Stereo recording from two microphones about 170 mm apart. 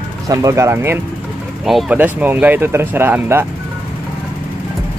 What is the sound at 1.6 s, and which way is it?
Speech, centre (ahead or behind).